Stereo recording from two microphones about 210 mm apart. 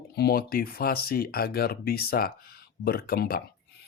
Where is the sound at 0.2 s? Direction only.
45° left (ahead or behind).